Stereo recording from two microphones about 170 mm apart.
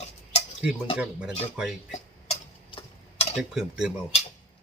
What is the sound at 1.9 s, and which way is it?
Tick-tock, 35° left (ahead or behind).